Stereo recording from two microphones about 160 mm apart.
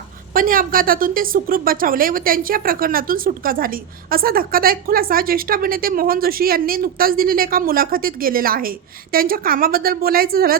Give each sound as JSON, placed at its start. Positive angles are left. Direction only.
{"t": 0.3, "sound": "a woman's voice", "side_deg": -60}